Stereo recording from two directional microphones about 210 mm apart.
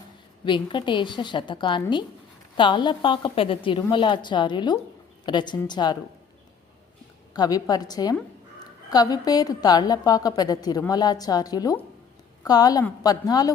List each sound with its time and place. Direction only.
0.4 s a woman's voice: 20° left (ahead or behind)
7.3 s a woman's voice: 20° left (ahead or behind)